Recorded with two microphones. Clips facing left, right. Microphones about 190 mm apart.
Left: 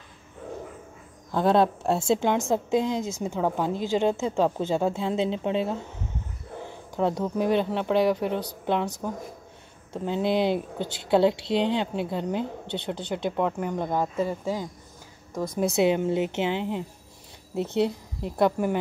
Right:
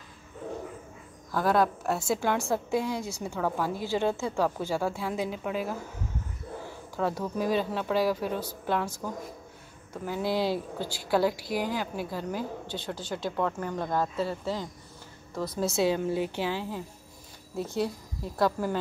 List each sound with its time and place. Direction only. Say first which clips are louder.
1.3 s a woman's voice: left 4 dB; 25° left (ahead or behind)
7.0 s a woman's voice: left 4 dB; 20° left (ahead or behind)
7.3 s speech: left 4 dB; 65° left (ahead or behind)
7.7 s a woman's voice: left 4 dB; 20° left (ahead or behind)